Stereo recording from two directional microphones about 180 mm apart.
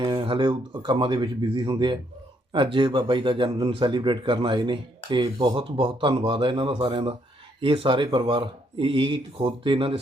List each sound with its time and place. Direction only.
0.0 s speech: 30° right (ahead or behind)